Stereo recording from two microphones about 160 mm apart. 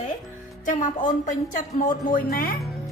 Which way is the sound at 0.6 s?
55° left (ahead or behind).